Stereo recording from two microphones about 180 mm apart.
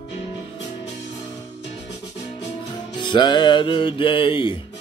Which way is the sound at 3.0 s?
25° left (ahead or behind).